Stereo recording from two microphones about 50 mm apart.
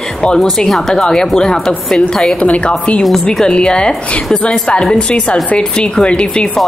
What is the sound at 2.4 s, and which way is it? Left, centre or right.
Speech, left.